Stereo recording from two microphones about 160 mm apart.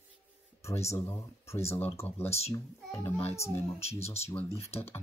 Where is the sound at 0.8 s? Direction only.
15° left (ahead or behind).